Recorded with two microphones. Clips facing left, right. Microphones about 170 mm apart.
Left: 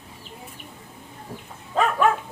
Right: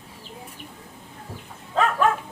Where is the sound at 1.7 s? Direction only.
10° left (ahead or behind).